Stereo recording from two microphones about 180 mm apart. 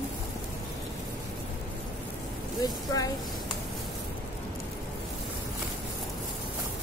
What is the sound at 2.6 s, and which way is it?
Speech, 20° left (ahead or behind).